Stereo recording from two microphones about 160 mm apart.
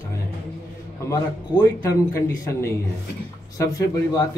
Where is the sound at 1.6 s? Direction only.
20° left (ahead or behind).